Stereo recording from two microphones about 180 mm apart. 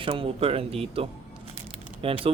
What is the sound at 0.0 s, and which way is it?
Speech, 30° right (ahead or behind).